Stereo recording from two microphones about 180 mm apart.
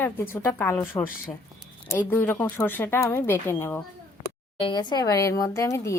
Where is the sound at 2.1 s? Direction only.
10° left (ahead or behind).